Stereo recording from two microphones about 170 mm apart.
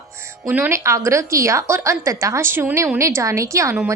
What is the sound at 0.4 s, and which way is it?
A woman's voice, 10° right (ahead or behind).